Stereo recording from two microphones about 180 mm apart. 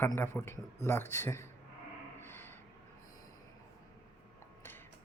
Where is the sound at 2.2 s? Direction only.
10° left (ahead or behind).